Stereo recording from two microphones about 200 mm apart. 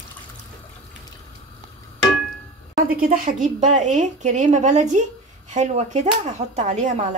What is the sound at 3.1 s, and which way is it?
Speech, 40° right (ahead or behind).